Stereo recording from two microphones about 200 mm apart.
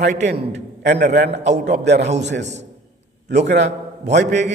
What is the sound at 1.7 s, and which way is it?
Speech, 55° right (ahead or behind).